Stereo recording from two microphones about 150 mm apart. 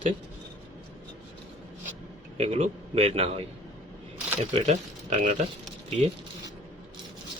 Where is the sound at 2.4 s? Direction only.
40° right (ahead or behind).